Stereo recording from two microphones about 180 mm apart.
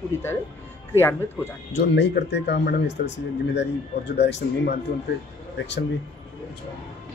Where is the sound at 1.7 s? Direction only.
70° left (ahead or behind).